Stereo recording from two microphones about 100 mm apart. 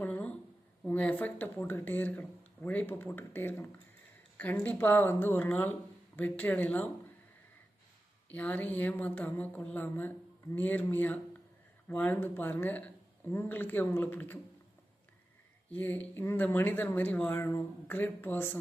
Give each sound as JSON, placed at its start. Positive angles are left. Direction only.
{"t": 0.0, "sound": "a sound", "side_deg": 15}
{"t": 0.9, "sound": "speech", "side_deg": 15}
{"t": 8.3, "sound": "speech", "side_deg": 15}
{"t": 15.7, "sound": "speech", "side_deg": 15}